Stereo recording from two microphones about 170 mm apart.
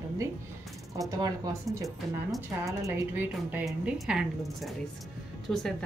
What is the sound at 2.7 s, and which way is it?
A woman's voice, 15° right (ahead or behind).